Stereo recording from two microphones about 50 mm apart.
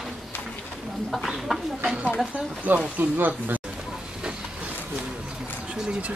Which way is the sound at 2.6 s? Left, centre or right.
Right.